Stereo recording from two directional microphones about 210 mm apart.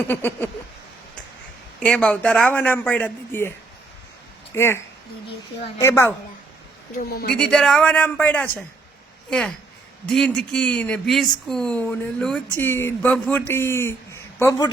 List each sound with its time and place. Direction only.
0.0 s speech: 10° left (ahead or behind)
1.8 s speech: 5° left (ahead or behind)
4.5 s speech: 10° left (ahead or behind)
5.8 s speech: 10° left (ahead or behind)
7.1 s speech: 45° left (ahead or behind)
7.3 s speech: 5° left (ahead or behind)
10.1 s speech: 5° left (ahead or behind)